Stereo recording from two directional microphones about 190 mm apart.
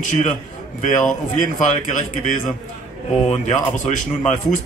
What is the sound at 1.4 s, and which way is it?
Speech, 40° left (ahead or behind).